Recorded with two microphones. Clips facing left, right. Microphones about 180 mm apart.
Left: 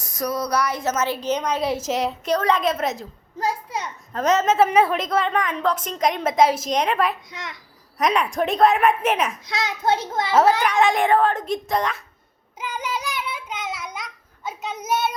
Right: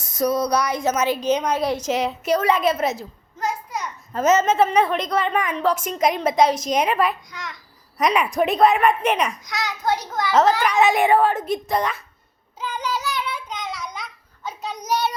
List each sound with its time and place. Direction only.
0.0 s a woman's voice: 25° right (ahead or behind)
1.6 s a woman's voice: 5° left (ahead or behind)
3.4 s a sound: 25° left (ahead or behind)
4.1 s a woman's voice: centre (ahead or behind)
7.3 s a child's voice: 25° left (ahead or behind)
7.9 s a woman's voice: centre (ahead or behind)
9.5 s a child's voice: 25° left (ahead or behind)
10.6 s a woman's voice: 5° right (ahead or behind)
12.5 s child singing: 10° left (ahead or behind)